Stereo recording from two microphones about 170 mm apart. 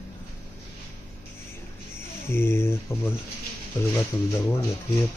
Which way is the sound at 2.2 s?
15° left (ahead or behind).